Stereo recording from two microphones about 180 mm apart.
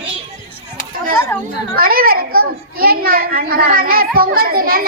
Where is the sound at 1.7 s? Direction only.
55° right (ahead or behind).